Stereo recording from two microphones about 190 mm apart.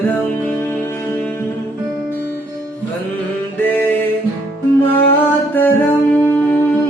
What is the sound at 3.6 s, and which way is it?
Music, 10° left (ahead or behind).